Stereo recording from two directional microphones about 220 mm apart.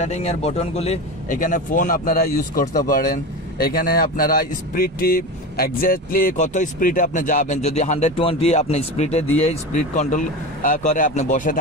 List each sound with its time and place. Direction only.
0.0 s speech: 30° left (ahead or behind)